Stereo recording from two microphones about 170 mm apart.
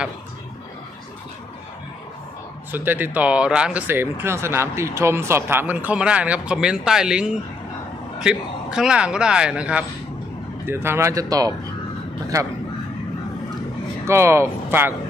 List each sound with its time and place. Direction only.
2.7 s a man's voice: 10° right (ahead or behind)
14.0 s speech: 15° right (ahead or behind)